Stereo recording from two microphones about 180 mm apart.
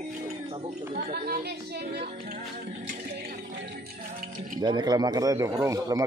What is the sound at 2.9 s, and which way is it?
Music, 65° right (ahead or behind).